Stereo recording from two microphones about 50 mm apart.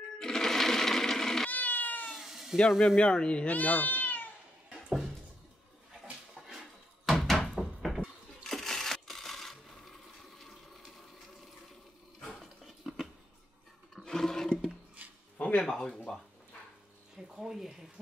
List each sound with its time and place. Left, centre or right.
0.2 s music: centre
1.5 s cat: left
2.0 s cat: centre
3.0 s speech: centre
3.4 s cat: left
4.8 s a sound: centre
7.1 s door: centre
8.5 s coin: centre
12.4 s a sound: centre
14.0 s roar: centre
15.3 s a sound: left
15.6 s a sound: centre
17.3 s speech: centre